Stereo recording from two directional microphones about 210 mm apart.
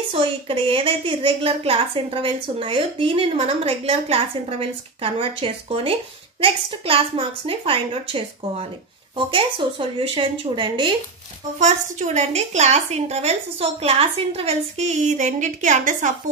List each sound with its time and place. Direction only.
0.1 s a woman's voice: 25° right (ahead or behind)
11.6 s a woman's voice: 35° right (ahead or behind)